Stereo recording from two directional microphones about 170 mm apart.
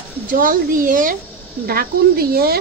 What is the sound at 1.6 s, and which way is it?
Speech, 65° right (ahead or behind).